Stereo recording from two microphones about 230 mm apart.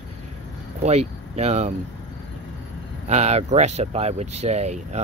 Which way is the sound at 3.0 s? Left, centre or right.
Right.